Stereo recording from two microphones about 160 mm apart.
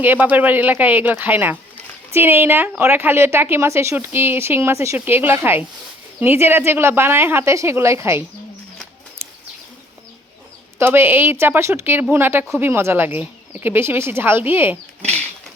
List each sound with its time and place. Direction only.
0.0 s a woman's voice: 10° right (ahead or behind)
9.2 s bird: 15° right (ahead or behind)
10.8 s a woman's voice: 15° right (ahead or behind)